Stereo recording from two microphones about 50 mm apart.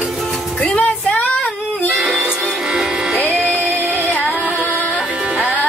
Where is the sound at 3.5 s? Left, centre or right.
Left.